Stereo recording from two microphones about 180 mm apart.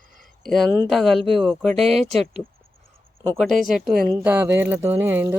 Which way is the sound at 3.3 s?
Centre (ahead or behind).